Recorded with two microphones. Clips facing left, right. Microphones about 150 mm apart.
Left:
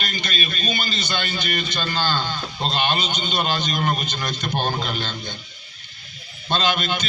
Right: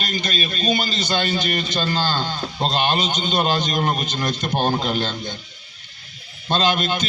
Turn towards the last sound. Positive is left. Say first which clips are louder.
# right 2 dB
turn(degrees=-40)  # may be behind; listen again after turning